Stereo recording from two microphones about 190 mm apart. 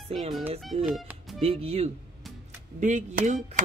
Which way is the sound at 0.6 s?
5° right (ahead or behind).